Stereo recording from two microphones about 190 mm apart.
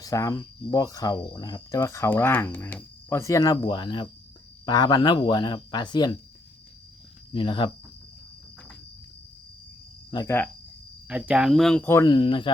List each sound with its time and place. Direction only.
0.0 s speech: 15° left (ahead or behind)
7.3 s speech: 25° left (ahead or behind)
10.1 s speech: 20° left (ahead or behind)
11.1 s speech: 5° right (ahead or behind); by 12.5 s 25° left (ahead or behind)